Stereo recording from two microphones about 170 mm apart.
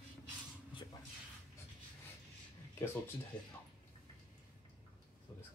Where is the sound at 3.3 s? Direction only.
25° left (ahead or behind).